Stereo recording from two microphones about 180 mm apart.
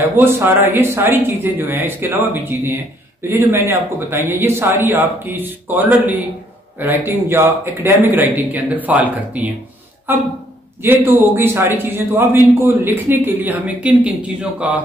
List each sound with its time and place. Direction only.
0.2 s a man's voice: 15° right (ahead or behind)
3.3 s a man's voice: 15° right (ahead or behind)